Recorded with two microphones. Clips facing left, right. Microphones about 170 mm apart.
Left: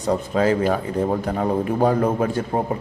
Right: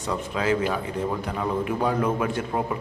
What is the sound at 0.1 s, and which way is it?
A man's voice, 40° left (ahead or behind).